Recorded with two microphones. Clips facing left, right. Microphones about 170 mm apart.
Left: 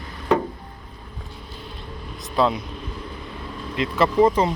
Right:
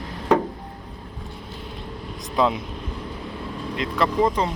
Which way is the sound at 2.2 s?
15° right (ahead or behind).